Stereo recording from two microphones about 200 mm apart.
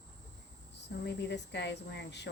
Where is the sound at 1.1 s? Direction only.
60° left (ahead or behind).